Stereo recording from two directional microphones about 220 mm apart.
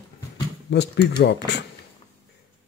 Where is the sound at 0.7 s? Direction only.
50° left (ahead or behind).